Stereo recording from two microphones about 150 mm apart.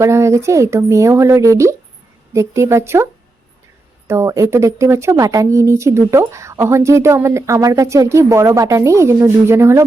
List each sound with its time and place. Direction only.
0.0 s speech: 20° right (ahead or behind)